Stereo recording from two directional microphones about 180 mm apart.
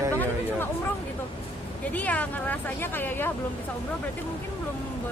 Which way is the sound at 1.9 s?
10° left (ahead or behind).